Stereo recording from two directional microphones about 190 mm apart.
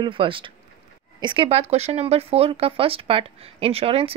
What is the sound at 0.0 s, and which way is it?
Speech, 25° right (ahead or behind).